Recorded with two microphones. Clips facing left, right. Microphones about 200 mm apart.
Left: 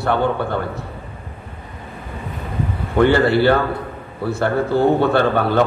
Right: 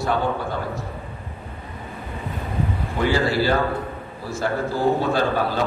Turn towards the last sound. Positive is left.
turn(degrees=60)  # may be behind; listen again after turning